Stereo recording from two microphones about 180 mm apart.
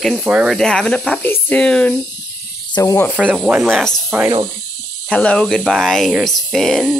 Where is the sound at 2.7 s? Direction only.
20° left (ahead or behind).